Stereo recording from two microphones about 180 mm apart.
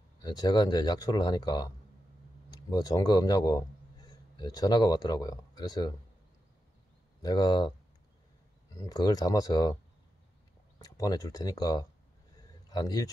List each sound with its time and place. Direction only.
0.2 s a man's voice: 25° left (ahead or behind)
7.2 s speech: 20° left (ahead or behind)
8.7 s speech: 25° left (ahead or behind)
10.8 s a man's voice: 20° left (ahead or behind)